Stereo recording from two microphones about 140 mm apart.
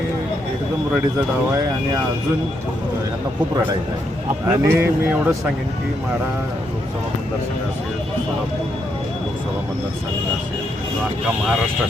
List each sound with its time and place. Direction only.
4.4 s speech: 15° right (ahead or behind)